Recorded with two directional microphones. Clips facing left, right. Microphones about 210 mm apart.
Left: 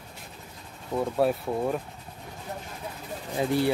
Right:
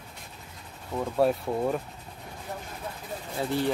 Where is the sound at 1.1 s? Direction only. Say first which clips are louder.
Right 2 dB; centre (ahead or behind).